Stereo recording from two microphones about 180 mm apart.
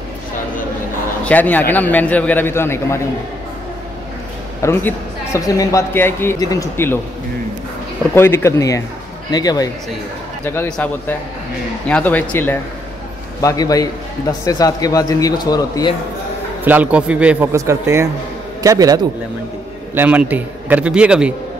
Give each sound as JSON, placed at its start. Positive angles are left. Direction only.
{"t": 1.2, "sound": "a man's voice", "side_deg": 10}
{"t": 4.6, "sound": "a man's voice", "side_deg": 15}
{"t": 8.1, "sound": "a man's voice", "side_deg": 15}
{"t": 16.6, "sound": "a man's voice", "side_deg": -10}